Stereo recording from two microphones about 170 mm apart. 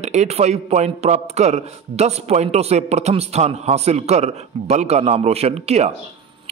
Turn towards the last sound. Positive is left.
turn(degrees=-40)  # may be behind; listen again after turning